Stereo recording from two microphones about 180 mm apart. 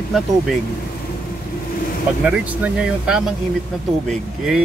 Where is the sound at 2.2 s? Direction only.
5° right (ahead or behind).